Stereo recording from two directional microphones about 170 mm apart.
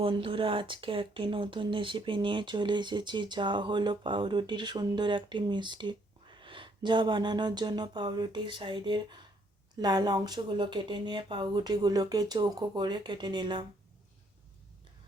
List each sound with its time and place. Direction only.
0.0 s speech: 30° right (ahead or behind)